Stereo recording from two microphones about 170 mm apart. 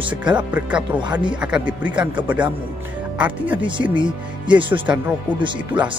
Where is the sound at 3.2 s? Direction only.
10° right (ahead or behind).